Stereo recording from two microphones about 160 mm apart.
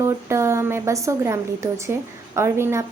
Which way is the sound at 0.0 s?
20° right (ahead or behind).